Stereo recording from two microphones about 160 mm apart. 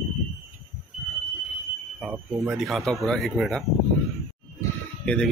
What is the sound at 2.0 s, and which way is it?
Speech, 5° right (ahead or behind).